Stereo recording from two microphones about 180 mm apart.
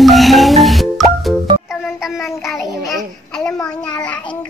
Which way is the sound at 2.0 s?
Centre (ahead or behind).